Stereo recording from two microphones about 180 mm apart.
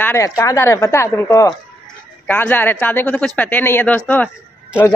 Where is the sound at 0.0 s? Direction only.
15° left (ahead or behind).